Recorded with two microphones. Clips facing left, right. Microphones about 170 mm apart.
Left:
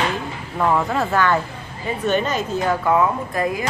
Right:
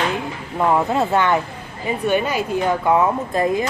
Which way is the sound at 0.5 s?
20° right (ahead or behind).